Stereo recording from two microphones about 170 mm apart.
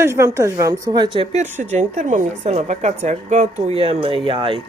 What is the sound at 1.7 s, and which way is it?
A woman's voice, 45° right (ahead or behind).